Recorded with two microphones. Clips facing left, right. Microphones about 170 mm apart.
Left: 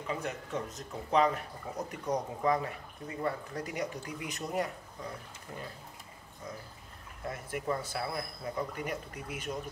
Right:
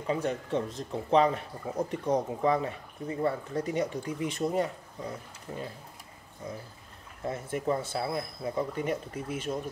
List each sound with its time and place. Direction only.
0.0 s speech: 30° right (ahead or behind)
7.2 s speech: 25° right (ahead or behind)